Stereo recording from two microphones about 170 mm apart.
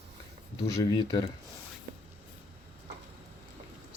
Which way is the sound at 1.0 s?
25° left (ahead or behind).